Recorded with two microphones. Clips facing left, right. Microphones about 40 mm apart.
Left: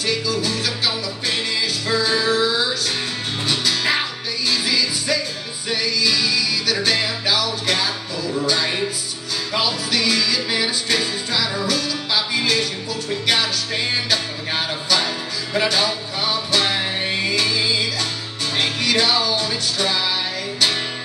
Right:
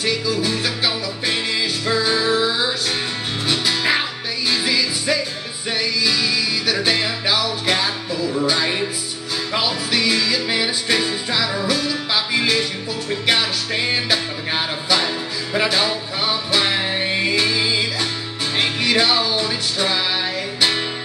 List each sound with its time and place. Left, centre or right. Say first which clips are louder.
0.0 s music: right 1 dB; centre